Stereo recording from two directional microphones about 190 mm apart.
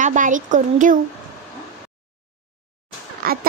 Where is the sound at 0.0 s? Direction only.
40° right (ahead or behind).